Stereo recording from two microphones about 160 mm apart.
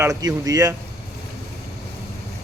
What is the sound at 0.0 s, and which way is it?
Speech, 20° right (ahead or behind).